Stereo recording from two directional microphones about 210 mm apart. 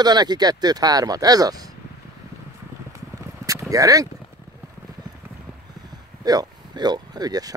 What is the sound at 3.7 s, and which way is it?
Speech, 15° right (ahead or behind).